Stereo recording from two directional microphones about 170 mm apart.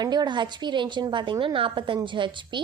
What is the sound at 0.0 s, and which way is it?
A woman's voice, 25° right (ahead or behind).